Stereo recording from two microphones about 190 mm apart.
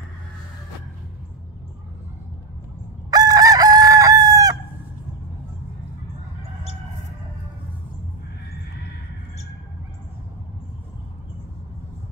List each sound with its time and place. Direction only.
3.1 s chicken: 20° right (ahead or behind)